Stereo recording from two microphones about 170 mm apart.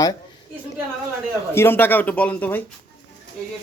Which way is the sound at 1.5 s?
15° left (ahead or behind).